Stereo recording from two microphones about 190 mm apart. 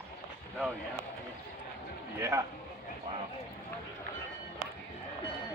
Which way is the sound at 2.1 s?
15° right (ahead or behind).